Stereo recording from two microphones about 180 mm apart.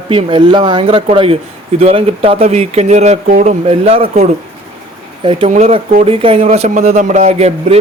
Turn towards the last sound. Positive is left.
turn(degrees=-40)  # may be behind; listen again after turning